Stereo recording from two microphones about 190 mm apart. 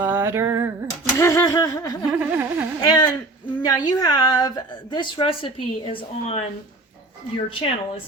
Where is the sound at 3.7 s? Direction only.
20° left (ahead or behind).